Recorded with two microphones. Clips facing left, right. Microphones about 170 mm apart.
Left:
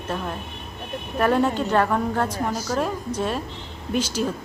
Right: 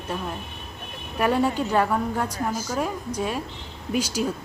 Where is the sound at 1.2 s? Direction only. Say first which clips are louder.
Left 2 dB; 10° right (ahead or behind).